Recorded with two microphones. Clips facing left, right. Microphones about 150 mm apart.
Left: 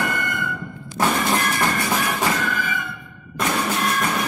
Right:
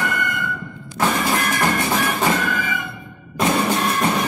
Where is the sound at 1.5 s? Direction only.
20° right (ahead or behind).